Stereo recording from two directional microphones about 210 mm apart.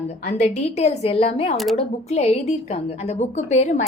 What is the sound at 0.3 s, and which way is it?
A woman's voice, 35° left (ahead or behind).